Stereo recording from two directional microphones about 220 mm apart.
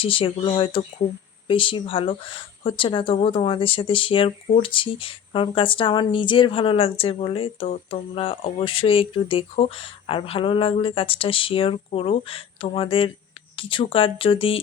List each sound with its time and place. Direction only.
0.0 s speech: 25° left (ahead or behind)